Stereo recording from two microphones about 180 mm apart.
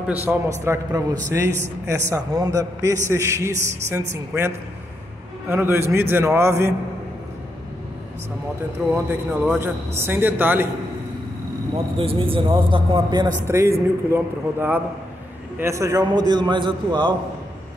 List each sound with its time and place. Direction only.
0.0 s a man's voice: 10° right (ahead or behind)
5.5 s a man's voice: 10° right (ahead or behind)
9.3 s a man's voice: 10° right (ahead or behind)
12.0 s a man's voice: 30° right (ahead or behind)